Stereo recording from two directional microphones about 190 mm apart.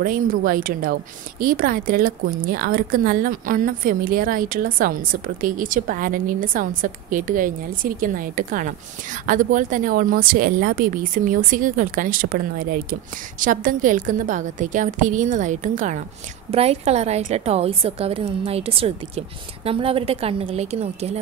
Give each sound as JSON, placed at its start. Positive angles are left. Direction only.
{"t": 0.0, "sound": "a woman's voice", "side_deg": -50}